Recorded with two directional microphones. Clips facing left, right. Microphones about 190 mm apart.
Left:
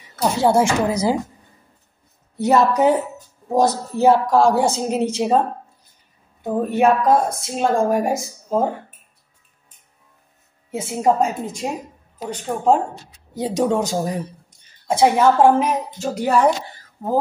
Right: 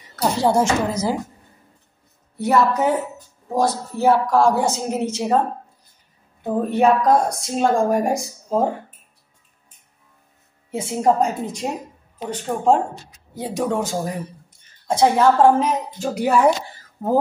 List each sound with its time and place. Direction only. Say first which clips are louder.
0.4 s speech: left 2 dB; 10° left (ahead or behind)
2.3 s a woman's voice: left 2 dB; 20° left (ahead or behind)
6.4 s speech: even; 5° left (ahead or behind)
10.7 s speech: even; centre (ahead or behind)
13.4 s a woman's voice: left 3 dB; 20° left (ahead or behind)
16.0 s speech: even; centre (ahead or behind)